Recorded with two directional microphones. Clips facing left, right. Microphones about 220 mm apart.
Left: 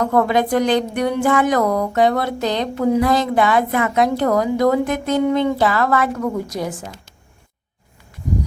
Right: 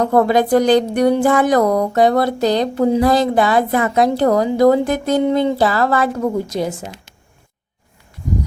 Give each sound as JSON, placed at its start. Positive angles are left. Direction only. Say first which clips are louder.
{"t": 0.0, "sound": "speech", "louder": "right 3 dB", "side_deg": -35}